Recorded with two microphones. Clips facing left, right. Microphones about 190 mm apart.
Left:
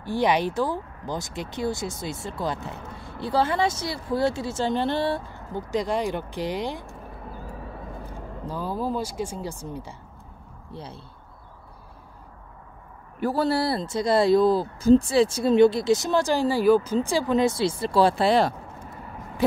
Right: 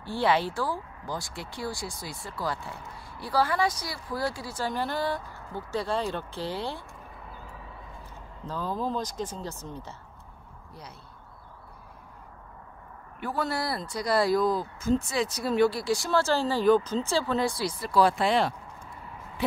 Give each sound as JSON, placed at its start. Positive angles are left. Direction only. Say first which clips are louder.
{"t": 0.0, "sound": "speech", "louder": "left 3 dB", "side_deg": 15}
{"t": 8.1, "sound": "speech", "louder": "left 2 dB", "side_deg": 10}
{"t": 10.7, "sound": "speech", "louder": "left 8 dB", "side_deg": 30}
{"t": 13.2, "sound": "speech", "louder": "left 7 dB", "side_deg": 30}